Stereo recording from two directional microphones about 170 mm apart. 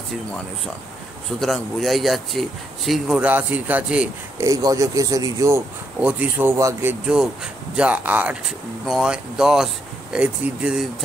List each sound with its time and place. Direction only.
1.4 s speech: centre (ahead or behind)
4.5 s speech: 20° right (ahead or behind)
5.9 s speech: 10° right (ahead or behind)